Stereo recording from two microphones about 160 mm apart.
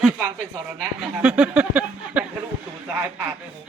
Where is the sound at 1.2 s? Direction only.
5° right (ahead or behind).